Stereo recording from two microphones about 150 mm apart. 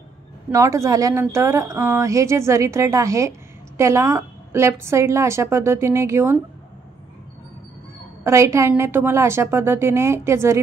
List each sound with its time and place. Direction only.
0.5 s speech: 20° right (ahead or behind)
8.2 s a woman's voice: 20° right (ahead or behind)